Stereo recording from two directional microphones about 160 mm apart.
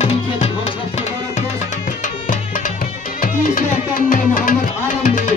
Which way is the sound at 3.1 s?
60° left (ahead or behind).